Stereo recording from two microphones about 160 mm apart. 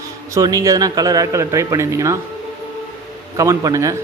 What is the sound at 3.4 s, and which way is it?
Speech, 20° right (ahead or behind).